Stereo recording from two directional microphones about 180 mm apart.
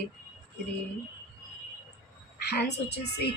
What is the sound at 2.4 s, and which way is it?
Speech, 65° left (ahead or behind).